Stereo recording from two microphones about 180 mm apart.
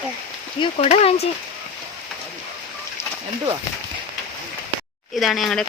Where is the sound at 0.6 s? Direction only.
35° left (ahead or behind).